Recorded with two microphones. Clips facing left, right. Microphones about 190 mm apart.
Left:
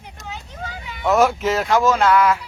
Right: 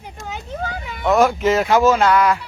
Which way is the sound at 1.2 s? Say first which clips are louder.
Right 3 dB; 5° left (ahead or behind).